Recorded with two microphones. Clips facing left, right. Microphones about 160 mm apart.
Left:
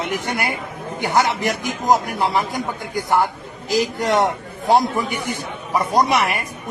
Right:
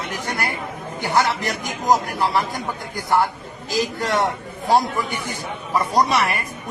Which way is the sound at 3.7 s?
20° left (ahead or behind).